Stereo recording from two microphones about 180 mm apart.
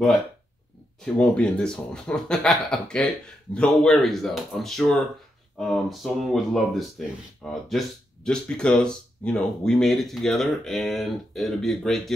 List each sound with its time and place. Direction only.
1.0 s speech: 5° left (ahead or behind)